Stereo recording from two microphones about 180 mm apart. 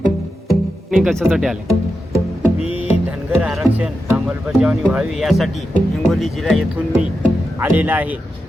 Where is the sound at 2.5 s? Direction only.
35° left (ahead or behind).